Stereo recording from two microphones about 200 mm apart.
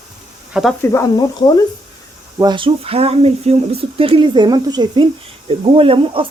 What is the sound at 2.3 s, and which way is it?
Speech, 20° right (ahead or behind).